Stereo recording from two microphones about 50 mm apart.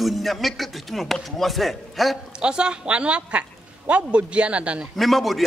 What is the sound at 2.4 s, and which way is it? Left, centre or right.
Speech, centre.